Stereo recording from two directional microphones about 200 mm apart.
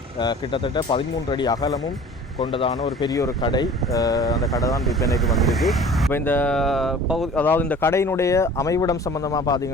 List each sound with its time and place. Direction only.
0.2 s speech: 25° left (ahead or behind)
4.9 s speech: centre (ahead or behind)
6.1 s speech: 10° left (ahead or behind)